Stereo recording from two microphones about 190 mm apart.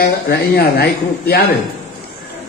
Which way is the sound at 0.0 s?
55° left (ahead or behind).